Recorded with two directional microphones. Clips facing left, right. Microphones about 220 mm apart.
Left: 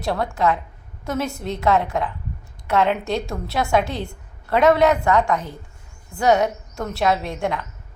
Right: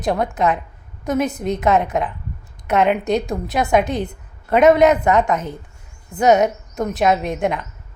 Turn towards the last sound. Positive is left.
turn(degrees=-20)  # may be behind; listen again after turning